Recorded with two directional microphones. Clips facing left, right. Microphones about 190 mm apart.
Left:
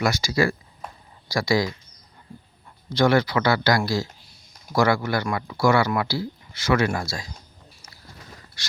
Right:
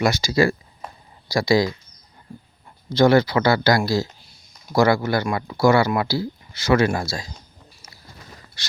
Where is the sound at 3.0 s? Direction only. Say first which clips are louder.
Right 3 dB; 25° right (ahead or behind).